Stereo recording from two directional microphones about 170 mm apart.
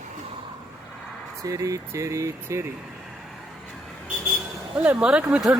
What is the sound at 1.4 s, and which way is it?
Speech, 20° right (ahead or behind).